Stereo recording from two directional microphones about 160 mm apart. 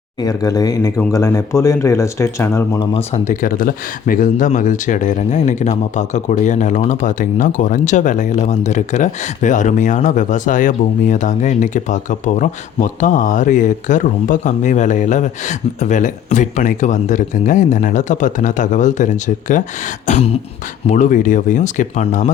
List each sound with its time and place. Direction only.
0.2 s speech: 25° left (ahead or behind)
2.7 s speech: 40° left (ahead or behind)
3.4 s speech: 60° left (ahead or behind)